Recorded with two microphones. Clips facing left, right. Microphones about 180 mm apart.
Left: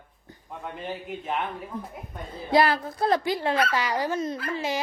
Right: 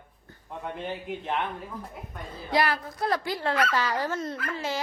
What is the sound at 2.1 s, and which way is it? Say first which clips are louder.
Speech: left 5 dB; 30° left (ahead or behind).